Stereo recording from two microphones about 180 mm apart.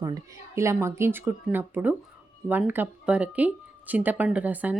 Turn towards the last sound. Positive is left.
turn(degrees=-10)  # may be behind; listen again after turning